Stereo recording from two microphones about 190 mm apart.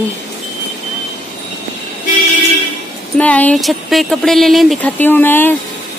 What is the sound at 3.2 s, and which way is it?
Speech, 10° left (ahead or behind).